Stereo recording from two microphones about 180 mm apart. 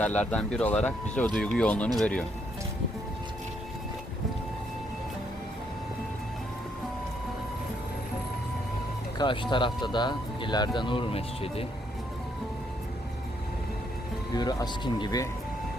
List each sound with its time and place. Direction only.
0.0 s speech: 10° left (ahead or behind)
9.1 s speech: 25° left (ahead or behind)
14.3 s speech: 20° left (ahead or behind)